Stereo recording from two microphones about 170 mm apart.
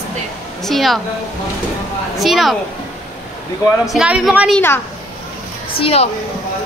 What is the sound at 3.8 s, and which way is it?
Speech, 5° right (ahead or behind).